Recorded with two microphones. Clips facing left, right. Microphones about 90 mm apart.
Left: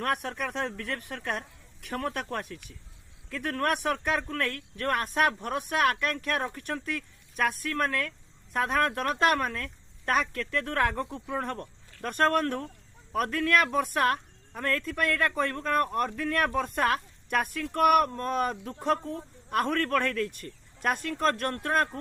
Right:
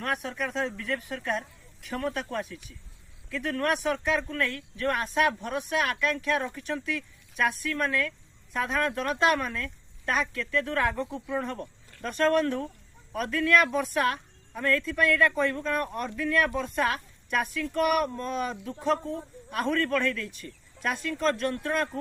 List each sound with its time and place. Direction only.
0.0 s speech: 55° left (ahead or behind)